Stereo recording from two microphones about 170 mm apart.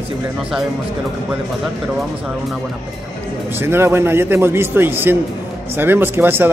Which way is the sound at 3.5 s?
15° right (ahead or behind).